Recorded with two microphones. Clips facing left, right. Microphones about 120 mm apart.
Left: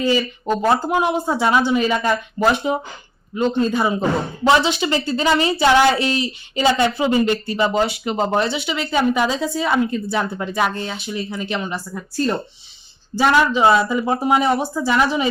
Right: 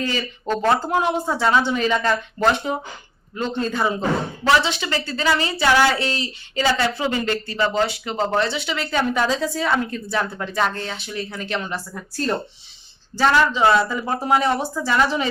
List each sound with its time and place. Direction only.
0.0 s a woman's voice: 10° left (ahead or behind)
13.1 s speech: 15° left (ahead or behind)